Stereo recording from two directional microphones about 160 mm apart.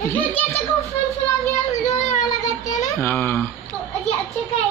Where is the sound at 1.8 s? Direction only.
50° left (ahead or behind).